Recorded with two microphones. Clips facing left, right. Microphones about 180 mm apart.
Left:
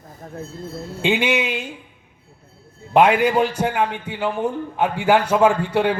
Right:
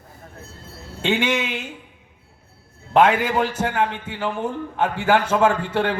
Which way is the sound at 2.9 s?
10° left (ahead or behind).